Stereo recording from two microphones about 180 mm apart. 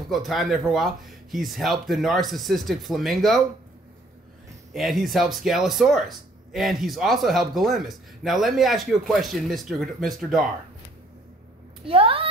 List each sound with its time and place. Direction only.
0.1 s speech: centre (ahead or behind)
4.7 s speech: centre (ahead or behind)
11.8 s speech: 30° right (ahead or behind)